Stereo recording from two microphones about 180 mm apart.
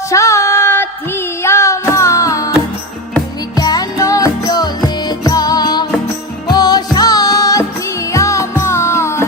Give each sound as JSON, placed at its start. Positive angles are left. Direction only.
{"t": 0.1, "sound": "music", "side_deg": 15}
{"t": 3.6, "sound": "music", "side_deg": 20}